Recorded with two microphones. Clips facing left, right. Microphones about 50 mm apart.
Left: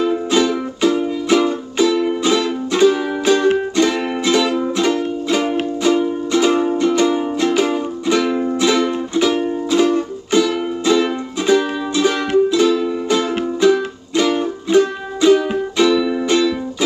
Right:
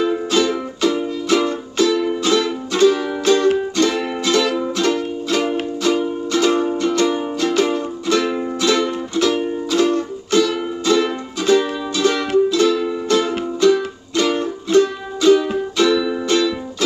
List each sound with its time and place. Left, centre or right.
1.0 s music: centre